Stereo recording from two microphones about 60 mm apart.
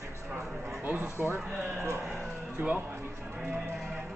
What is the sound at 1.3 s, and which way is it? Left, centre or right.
Speech, right.